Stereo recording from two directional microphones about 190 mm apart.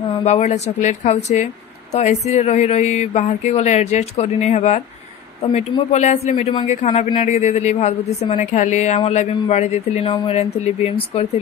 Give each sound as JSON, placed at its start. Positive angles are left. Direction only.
{"t": 0.2, "sound": "a woman's voice", "side_deg": 35}